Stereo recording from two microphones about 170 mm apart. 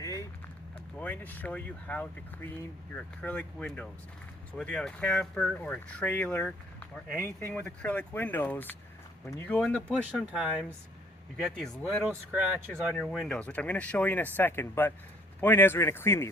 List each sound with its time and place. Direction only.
0.0 s run: 20° left (ahead or behind)
0.9 s speech: 10° left (ahead or behind)
9.9 s speech: 10° right (ahead or behind); by 16.3 s 15° left (ahead or behind)